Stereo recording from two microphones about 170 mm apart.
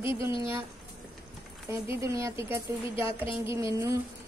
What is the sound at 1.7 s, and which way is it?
A woman's voice, 15° right (ahead or behind).